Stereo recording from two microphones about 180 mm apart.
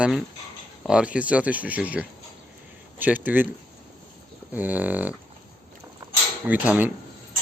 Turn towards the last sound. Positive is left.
turn(degrees=-10)  # may be behind; listen again after turning